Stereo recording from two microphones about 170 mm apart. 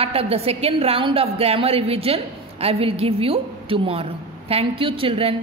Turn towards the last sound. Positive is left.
turn(degrees=-35)  # may be behind; listen again after turning